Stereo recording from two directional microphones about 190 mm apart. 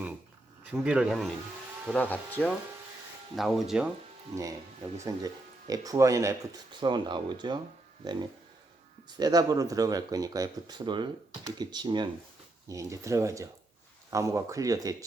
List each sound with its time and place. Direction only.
0.6 s speech: 5° right (ahead or behind)
1.9 s speech: 10° left (ahead or behind)
5.0 s speech: 20° right (ahead or behind)
9.0 s speech: 20° right (ahead or behind)